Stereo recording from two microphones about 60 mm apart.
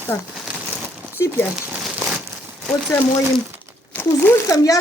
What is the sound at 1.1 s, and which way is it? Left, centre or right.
Speech, left.